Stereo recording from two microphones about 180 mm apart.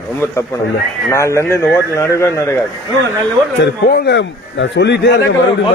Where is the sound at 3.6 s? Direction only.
65° left (ahead or behind).